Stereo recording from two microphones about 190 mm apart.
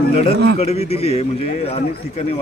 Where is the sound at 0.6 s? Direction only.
30° left (ahead or behind).